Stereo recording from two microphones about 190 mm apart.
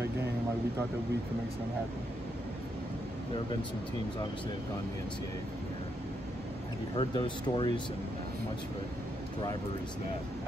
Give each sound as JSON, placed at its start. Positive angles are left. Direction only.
{"t": 7.0, "sound": "speech", "side_deg": 25}